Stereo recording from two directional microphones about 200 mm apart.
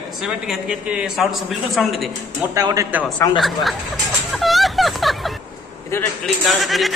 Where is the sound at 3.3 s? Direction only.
Centre (ahead or behind).